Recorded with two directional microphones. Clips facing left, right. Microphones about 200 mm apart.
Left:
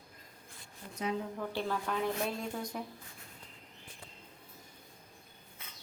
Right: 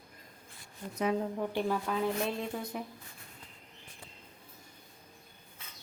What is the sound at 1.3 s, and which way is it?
A woman's voice, 15° right (ahead or behind).